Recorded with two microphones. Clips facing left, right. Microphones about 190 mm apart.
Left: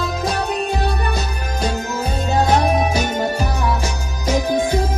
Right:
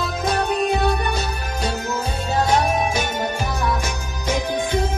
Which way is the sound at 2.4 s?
45° left (ahead or behind).